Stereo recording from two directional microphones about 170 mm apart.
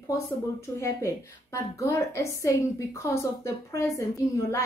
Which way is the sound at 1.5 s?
15° left (ahead or behind).